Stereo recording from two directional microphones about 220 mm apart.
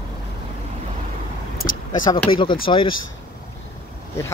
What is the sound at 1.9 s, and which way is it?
Speech, 20° left (ahead or behind).